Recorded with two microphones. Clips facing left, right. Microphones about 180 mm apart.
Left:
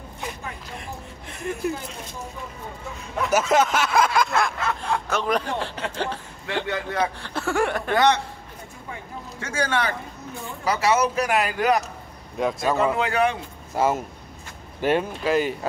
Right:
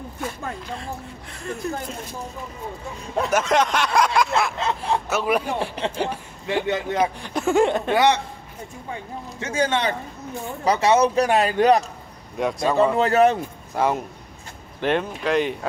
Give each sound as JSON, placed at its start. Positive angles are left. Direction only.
{"t": 1.3, "sound": "speech", "side_deg": 20}
{"t": 3.3, "sound": "speech", "side_deg": 5}
{"t": 4.6, "sound": "a sound", "side_deg": -20}
{"t": 5.0, "sound": "speech", "side_deg": -5}
{"t": 9.4, "sound": "speech", "side_deg": -20}
{"t": 12.4, "sound": "speech", "side_deg": 0}
{"t": 12.9, "sound": "speech", "side_deg": -40}
{"t": 13.7, "sound": "speech", "side_deg": 5}